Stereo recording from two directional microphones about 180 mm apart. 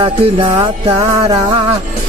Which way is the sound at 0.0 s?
25° right (ahead or behind).